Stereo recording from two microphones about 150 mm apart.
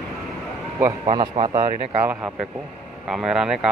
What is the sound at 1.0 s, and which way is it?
Speech, 35° right (ahead or behind).